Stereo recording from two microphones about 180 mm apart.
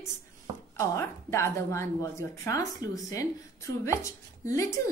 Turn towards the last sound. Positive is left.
turn(degrees=20)  # may be behind; listen again after turning